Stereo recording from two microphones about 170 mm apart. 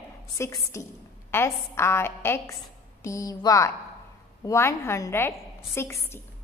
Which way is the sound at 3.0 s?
20° left (ahead or behind).